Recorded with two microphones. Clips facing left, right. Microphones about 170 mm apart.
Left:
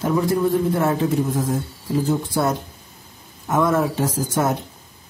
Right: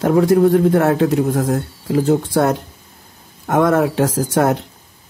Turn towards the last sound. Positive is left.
turn(degrees=-70)  # may be behind; listen again after turning